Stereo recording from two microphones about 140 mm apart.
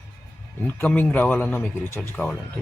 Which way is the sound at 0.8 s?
15° left (ahead or behind).